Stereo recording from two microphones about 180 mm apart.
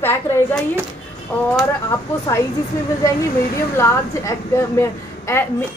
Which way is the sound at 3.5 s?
15° left (ahead or behind).